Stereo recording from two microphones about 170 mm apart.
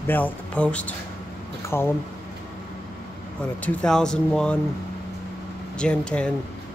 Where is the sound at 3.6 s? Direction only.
5° left (ahead or behind).